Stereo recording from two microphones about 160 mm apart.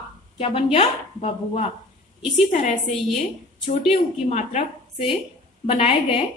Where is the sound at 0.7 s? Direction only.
40° left (ahead or behind).